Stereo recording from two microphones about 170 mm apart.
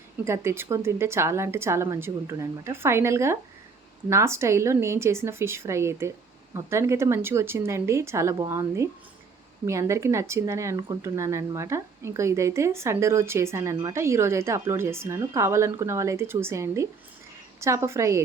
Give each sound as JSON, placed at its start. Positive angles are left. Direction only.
{"t": 0.3, "sound": "speech", "side_deg": -15}